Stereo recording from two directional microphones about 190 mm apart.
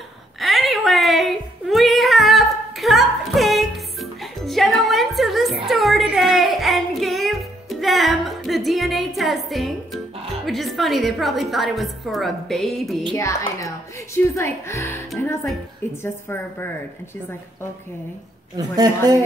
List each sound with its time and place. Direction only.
0.4 s a sound: centre (ahead or behind)
10.4 s a woman's voice: centre (ahead or behind)
13.1 s a woman's voice: 15° left (ahead or behind)
19.0 s speech: 20° right (ahead or behind)